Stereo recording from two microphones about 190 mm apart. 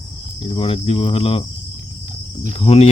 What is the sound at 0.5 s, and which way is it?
Speech, 30° left (ahead or behind).